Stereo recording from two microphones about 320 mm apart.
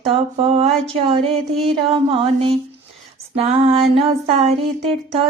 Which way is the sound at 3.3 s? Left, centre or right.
Centre.